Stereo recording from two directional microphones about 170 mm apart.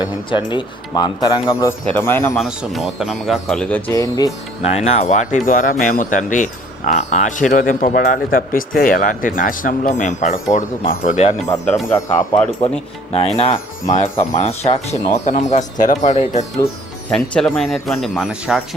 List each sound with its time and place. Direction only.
0.3 s speech: 30° left (ahead or behind)
2.4 s speech: centre (ahead or behind)
3.9 s speech: 20° left (ahead or behind)
4.7 s speech: 40° left (ahead or behind)
11.9 s speech: 15° left (ahead or behind)
13.1 s speech: 35° left (ahead or behind)
17.1 s speech: 5° left (ahead or behind)